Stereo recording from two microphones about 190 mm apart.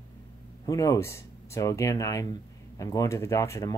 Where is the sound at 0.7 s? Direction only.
15° left (ahead or behind).